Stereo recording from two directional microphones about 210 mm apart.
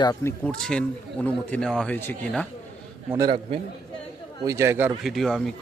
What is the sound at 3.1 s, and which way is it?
Speech, 20° right (ahead or behind).